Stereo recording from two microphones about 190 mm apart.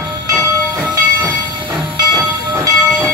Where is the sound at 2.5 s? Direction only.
15° right (ahead or behind).